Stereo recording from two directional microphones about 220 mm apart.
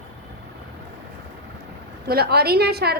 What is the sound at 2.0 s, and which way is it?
Speech, 45° right (ahead or behind).